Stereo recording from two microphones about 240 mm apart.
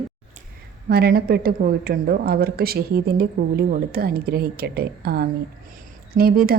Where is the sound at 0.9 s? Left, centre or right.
Right.